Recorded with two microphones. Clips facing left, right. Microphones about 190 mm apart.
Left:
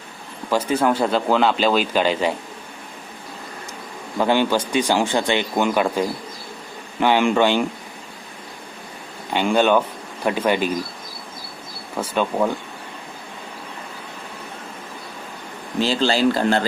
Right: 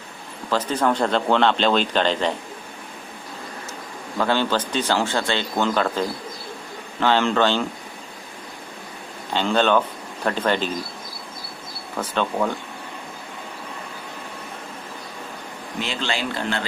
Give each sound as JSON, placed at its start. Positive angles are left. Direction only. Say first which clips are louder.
{"t": 0.5, "sound": "speech", "louder": "left 2 dB", "side_deg": 10}
{"t": 4.2, "sound": "speech", "louder": "left 3 dB", "side_deg": 15}
{"t": 9.3, "sound": "speech", "louder": "left 2 dB", "side_deg": 10}
{"t": 11.9, "sound": "speech", "louder": "left 2 dB", "side_deg": 10}
{"t": 15.8, "sound": "speech", "louder": "left 9 dB", "side_deg": 35}